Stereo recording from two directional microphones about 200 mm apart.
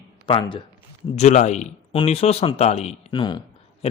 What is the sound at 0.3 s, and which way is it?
Speech, 25° left (ahead or behind).